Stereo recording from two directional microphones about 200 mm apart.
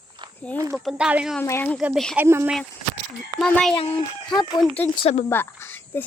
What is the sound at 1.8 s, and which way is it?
Speech, 5° right (ahead or behind).